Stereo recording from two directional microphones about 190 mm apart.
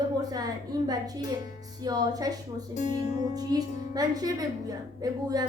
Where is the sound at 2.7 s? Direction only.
40° left (ahead or behind).